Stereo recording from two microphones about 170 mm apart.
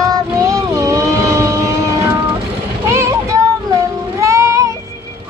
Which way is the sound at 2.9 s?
15° right (ahead or behind).